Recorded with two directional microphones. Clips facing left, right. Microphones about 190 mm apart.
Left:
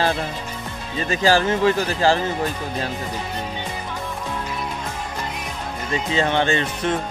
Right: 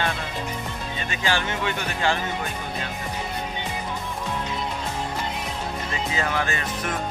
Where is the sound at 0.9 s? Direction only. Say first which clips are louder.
Left 9 dB; 35° left (ahead or behind).